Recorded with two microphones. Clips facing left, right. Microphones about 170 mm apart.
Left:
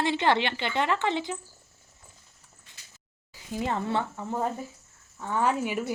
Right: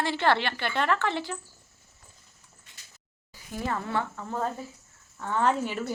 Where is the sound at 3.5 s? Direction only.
20° left (ahead or behind).